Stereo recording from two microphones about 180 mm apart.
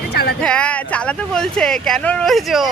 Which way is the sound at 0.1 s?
60° left (ahead or behind).